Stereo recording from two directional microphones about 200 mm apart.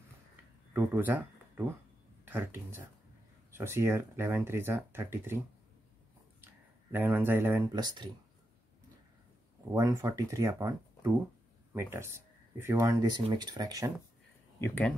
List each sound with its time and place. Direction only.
0.7 s speech: 10° right (ahead or behind)
6.4 s speech: 10° right (ahead or behind)
9.8 s speech: 15° right (ahead or behind)
11.7 s speech: 10° right (ahead or behind)
14.6 s speech: 5° left (ahead or behind)